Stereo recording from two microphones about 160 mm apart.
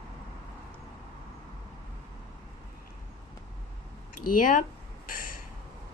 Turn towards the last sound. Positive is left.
turn(degrees=60)  # may be behind; listen again after turning